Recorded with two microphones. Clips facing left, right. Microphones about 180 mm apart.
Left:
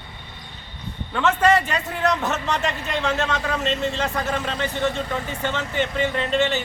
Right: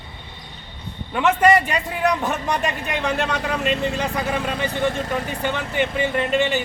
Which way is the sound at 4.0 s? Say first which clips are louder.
Right 1 dB; 10° right (ahead or behind).